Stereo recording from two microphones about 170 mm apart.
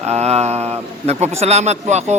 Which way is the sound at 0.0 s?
40° right (ahead or behind).